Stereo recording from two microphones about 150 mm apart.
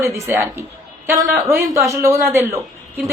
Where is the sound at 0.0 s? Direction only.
15° right (ahead or behind).